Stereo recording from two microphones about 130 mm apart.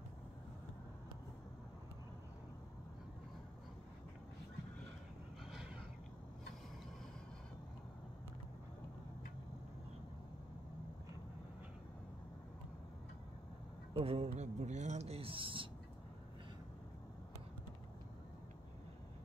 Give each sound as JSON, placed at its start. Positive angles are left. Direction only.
{"t": 13.9, "sound": "speech", "side_deg": -50}
{"t": 14.3, "sound": "speech", "side_deg": -65}